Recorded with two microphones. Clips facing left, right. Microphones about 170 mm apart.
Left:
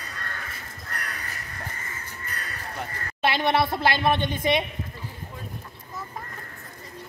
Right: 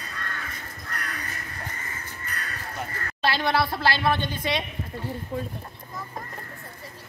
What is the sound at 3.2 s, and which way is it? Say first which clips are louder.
A woman's voice: left 2 dB; 20° left (ahead or behind).